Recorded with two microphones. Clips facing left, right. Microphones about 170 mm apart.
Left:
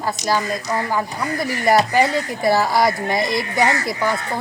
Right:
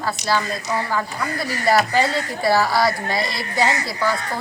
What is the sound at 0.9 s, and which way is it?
Speech, 15° left (ahead or behind).